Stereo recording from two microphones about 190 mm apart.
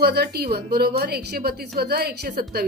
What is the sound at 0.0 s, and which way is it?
A woman's voice, 55° right (ahead or behind).